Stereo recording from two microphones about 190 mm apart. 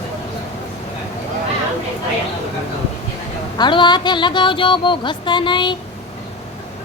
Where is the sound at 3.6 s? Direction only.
25° left (ahead or behind).